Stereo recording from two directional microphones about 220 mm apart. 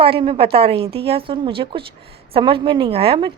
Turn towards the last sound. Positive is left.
turn(degrees=-25)  # may be behind; listen again after turning